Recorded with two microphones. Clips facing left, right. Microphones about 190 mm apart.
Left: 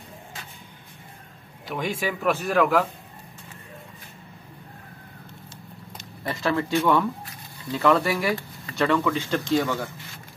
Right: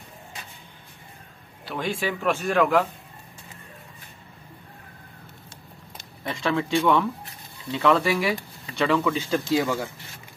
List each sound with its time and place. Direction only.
1.7 s speech: 10° left (ahead or behind)
6.2 s speech: centre (ahead or behind)